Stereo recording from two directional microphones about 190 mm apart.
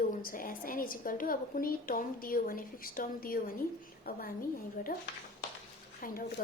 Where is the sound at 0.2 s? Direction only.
50° left (ahead or behind).